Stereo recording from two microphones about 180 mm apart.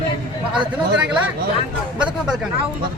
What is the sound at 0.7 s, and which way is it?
A man's voice, 5° right (ahead or behind).